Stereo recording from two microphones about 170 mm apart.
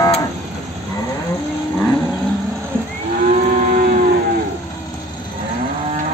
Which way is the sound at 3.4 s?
50° right (ahead or behind).